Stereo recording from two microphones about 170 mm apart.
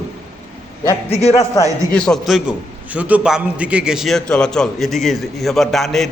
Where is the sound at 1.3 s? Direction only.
20° left (ahead or behind).